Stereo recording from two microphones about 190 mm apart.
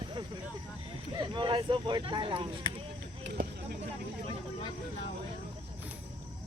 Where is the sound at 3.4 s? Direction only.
55° right (ahead or behind).